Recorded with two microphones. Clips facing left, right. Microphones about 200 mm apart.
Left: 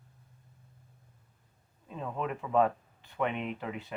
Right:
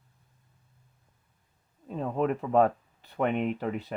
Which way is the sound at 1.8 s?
40° right (ahead or behind).